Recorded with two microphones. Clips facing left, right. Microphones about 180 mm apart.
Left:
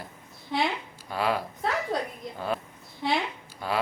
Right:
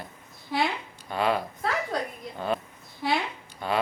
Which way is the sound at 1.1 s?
5° left (ahead or behind).